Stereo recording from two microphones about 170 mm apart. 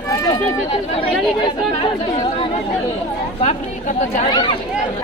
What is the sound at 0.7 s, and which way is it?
Speech, 30° left (ahead or behind).